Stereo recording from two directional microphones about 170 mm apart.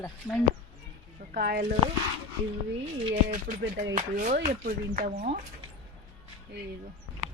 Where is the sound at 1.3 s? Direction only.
65° right (ahead or behind).